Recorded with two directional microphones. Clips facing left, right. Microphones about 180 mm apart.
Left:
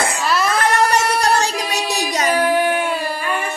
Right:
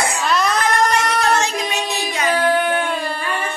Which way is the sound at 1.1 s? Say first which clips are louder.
Left 1 dB; 35° left (ahead or behind).